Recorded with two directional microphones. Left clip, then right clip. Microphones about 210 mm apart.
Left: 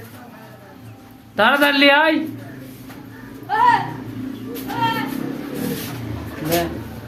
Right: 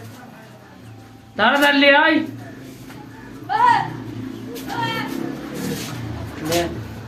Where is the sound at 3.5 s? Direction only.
55° left (ahead or behind).